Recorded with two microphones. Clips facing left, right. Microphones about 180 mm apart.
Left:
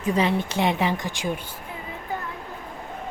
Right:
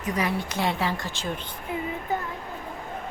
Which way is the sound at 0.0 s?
25° left (ahead or behind).